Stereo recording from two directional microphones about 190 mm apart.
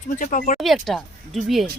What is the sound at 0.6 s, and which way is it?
Speech, centre (ahead or behind).